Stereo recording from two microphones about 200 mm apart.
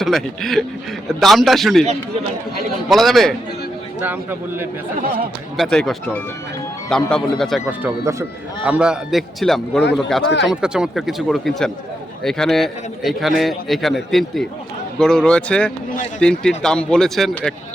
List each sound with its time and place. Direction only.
0.0 s a man's voice: centre (ahead or behind)
2.9 s a man's voice: centre (ahead or behind)
4.0 s a man's voice: 10° right (ahead or behind)
5.5 s a man's voice: centre (ahead or behind)
7.8 s a man's voice: 10° right (ahead or behind)
10.2 s speech: 60° left (ahead or behind)
10.5 s a man's voice: 5° right (ahead or behind)